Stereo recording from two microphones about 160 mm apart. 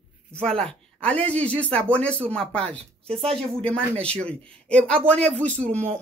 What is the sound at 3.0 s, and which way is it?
Speech, 40° right (ahead or behind).